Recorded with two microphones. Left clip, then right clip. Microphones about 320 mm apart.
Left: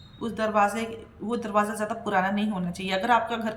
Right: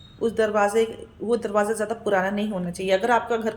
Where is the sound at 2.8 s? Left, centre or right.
Centre.